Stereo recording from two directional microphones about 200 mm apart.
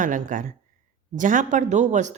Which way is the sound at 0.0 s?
40° right (ahead or behind).